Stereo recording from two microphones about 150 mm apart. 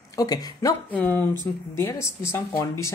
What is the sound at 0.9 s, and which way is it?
Speech, 10° left (ahead or behind).